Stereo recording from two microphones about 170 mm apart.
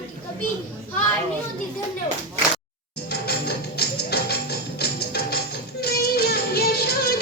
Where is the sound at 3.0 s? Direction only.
70° left (ahead or behind).